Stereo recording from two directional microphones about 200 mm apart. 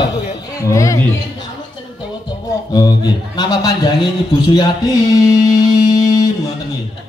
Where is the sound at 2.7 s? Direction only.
20° left (ahead or behind).